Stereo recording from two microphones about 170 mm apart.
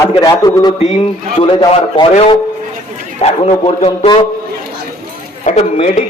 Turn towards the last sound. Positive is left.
turn(degrees=45)  # may be behind; listen again after turning